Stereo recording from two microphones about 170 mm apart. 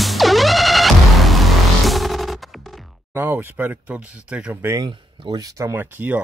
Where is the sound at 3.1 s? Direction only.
10° right (ahead or behind).